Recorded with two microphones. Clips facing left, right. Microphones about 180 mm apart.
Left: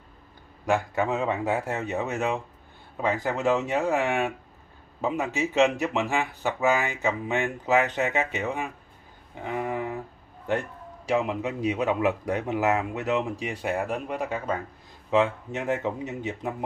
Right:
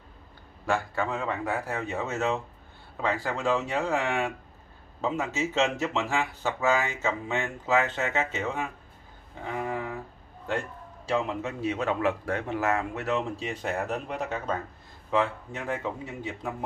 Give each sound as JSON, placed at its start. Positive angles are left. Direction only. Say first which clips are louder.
{"t": 0.7, "sound": "speech", "louder": "left 3 dB", "side_deg": 20}
{"t": 9.4, "sound": "a sound", "louder": "left 2 dB", "side_deg": 20}
{"t": 11.1, "sound": "speech", "louder": "left 3 dB", "side_deg": 15}